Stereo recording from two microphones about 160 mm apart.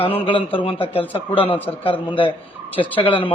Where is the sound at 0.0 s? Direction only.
35° left (ahead or behind).